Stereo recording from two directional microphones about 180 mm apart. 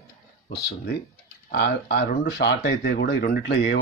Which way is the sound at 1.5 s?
65° left (ahead or behind).